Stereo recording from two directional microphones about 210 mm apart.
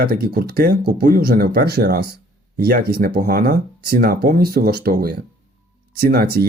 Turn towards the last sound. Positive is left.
turn(degrees=-45)  # may be behind; listen again after turning